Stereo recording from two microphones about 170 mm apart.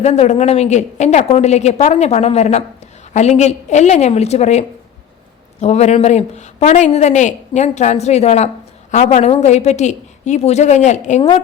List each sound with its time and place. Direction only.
0.0 s a woman's voice: 40° left (ahead or behind)
11.2 s speech: 30° left (ahead or behind)